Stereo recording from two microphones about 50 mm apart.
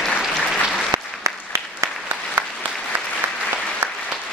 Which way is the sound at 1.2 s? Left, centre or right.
Right.